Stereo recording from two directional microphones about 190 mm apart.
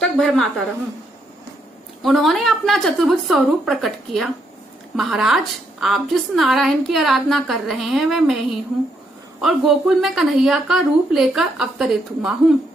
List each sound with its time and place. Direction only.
0.0 s a woman's voice: centre (ahead or behind)
2.0 s a woman's voice: centre (ahead or behind)
9.4 s a woman's voice: centre (ahead or behind)